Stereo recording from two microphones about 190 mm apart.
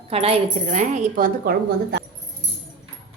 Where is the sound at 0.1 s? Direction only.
30° right (ahead or behind); by 2.0 s 55° right (ahead or behind).